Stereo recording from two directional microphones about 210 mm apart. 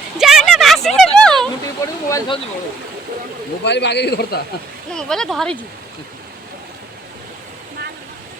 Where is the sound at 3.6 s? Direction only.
55° left (ahead or behind).